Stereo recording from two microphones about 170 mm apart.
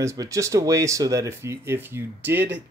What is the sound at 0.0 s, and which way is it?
Speech, 20° right (ahead or behind).